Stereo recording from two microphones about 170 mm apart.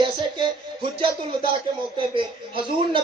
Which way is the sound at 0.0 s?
25° right (ahead or behind).